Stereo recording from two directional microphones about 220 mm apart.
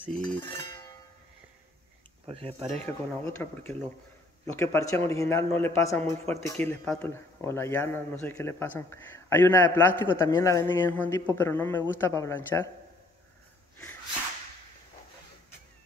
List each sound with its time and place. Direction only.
0.1 s cowbell: 5° left (ahead or behind)
0.4 s cowbell: 20° left (ahead or behind)
2.2 s speech: 25° right (ahead or behind)
2.9 s a man's voice: 10° left (ahead or behind)